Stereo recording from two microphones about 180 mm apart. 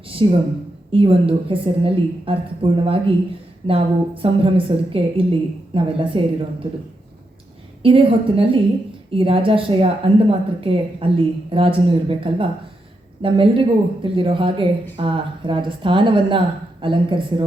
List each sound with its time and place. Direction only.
0.1 s a woman's voice: 30° right (ahead or behind)
7.8 s a woman's voice: 30° right (ahead or behind)